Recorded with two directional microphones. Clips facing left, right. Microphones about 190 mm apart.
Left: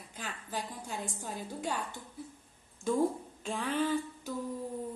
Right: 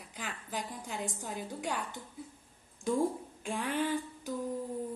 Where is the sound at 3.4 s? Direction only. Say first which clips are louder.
Left 1 dB; 15° right (ahead or behind).